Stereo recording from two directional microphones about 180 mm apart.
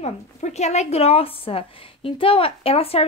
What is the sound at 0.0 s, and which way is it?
A woman's voice, 40° left (ahead or behind).